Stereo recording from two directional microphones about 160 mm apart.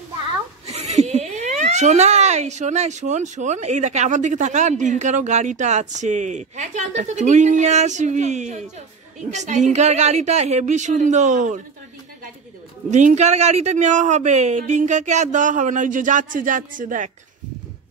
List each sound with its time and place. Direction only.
0.7 s speech: 45° right (ahead or behind)
12.9 s speech: 50° right (ahead or behind)